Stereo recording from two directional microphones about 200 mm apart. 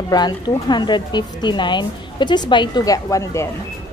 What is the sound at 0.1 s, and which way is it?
A woman's voice, 20° left (ahead or behind).